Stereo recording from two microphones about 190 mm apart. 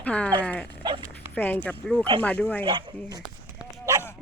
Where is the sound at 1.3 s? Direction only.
10° left (ahead or behind).